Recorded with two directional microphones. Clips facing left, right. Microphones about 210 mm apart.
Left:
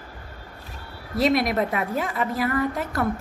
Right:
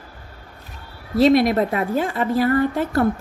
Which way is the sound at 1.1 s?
30° right (ahead or behind).